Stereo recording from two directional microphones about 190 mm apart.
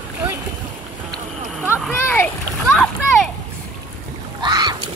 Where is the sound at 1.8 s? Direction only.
10° left (ahead or behind).